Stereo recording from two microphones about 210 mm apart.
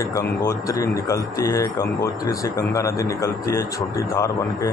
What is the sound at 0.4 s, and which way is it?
Speech, 15° left (ahead or behind).